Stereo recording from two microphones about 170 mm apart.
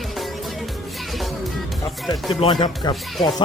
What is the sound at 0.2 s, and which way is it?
Music, centre (ahead or behind).